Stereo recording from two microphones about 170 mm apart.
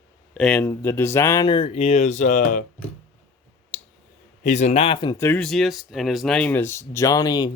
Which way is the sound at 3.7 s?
50° left (ahead or behind).